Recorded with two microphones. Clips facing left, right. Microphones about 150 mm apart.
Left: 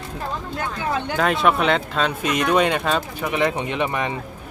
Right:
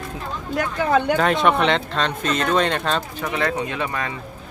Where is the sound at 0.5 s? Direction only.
60° right (ahead or behind).